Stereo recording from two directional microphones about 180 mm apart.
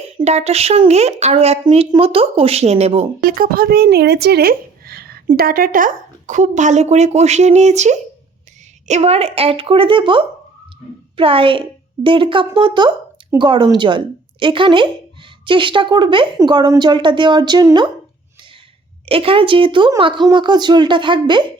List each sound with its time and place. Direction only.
0.2 s speech: 35° right (ahead or behind)
3.2 s a woman's voice: 50° right (ahead or behind); by 17.9 s 25° right (ahead or behind)
19.0 s a woman's voice: 30° right (ahead or behind)